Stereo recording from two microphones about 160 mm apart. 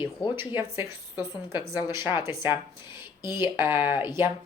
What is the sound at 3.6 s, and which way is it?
Speech, 10° right (ahead or behind).